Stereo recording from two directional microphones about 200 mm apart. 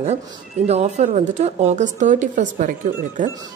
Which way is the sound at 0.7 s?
35° right (ahead or behind).